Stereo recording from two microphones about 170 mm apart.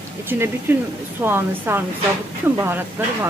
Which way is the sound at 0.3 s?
15° right (ahead or behind).